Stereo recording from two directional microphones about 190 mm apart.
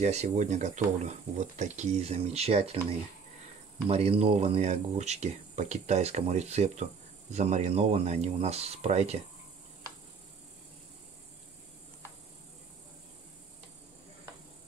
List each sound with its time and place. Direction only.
0.0 s speech: 35° right (ahead or behind)